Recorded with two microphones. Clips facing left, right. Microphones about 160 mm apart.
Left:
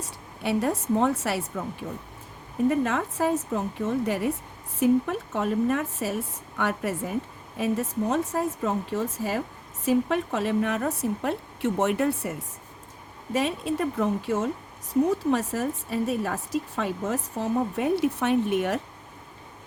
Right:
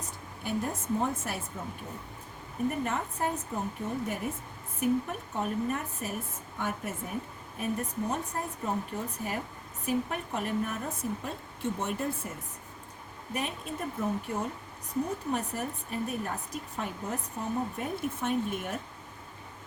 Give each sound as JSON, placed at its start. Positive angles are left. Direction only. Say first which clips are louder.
{"t": 0.4, "sound": "a woman's voice", "louder": "left 7 dB", "side_deg": 80}
{"t": 2.6, "sound": "a woman's voice", "louder": "left 7 dB", "side_deg": 90}
{"t": 13.3, "sound": "a woman's voice", "louder": "left 9 dB", "side_deg": 90}